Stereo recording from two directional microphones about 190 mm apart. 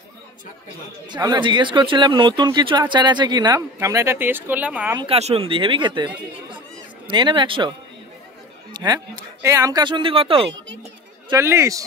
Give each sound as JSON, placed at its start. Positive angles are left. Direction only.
{"t": 1.1, "sound": "speech", "side_deg": -20}
{"t": 4.9, "sound": "speech", "side_deg": -30}
{"t": 7.1, "sound": "speech", "side_deg": -25}
{"t": 8.7, "sound": "speech", "side_deg": -20}
{"t": 11.2, "sound": "speech", "side_deg": -15}